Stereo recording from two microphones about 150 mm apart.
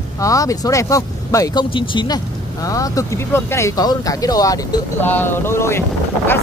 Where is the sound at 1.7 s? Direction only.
35° left (ahead or behind).